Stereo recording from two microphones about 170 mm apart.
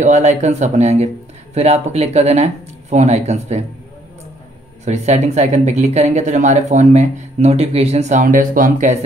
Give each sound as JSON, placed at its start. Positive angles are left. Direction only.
{"t": 0.0, "sound": "speech", "side_deg": -40}
{"t": 4.8, "sound": "speech", "side_deg": -40}